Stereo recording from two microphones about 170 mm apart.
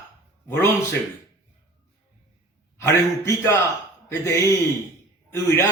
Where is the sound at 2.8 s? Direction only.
15° left (ahead or behind).